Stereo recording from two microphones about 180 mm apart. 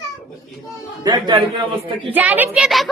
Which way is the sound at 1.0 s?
25° right (ahead or behind).